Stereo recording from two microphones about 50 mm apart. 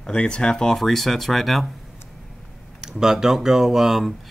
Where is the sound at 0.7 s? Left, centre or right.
Centre.